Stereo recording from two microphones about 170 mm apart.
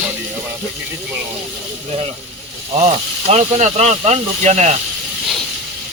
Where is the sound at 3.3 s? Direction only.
40° right (ahead or behind).